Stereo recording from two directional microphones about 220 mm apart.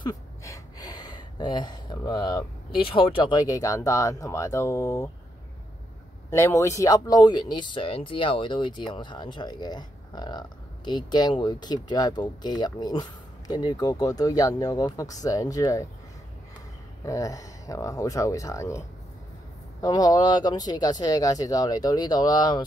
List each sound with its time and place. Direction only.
0.0 s speech: 15° left (ahead or behind)
6.3 s speech: 15° left (ahead or behind)
17.0 s speech: 15° left (ahead or behind)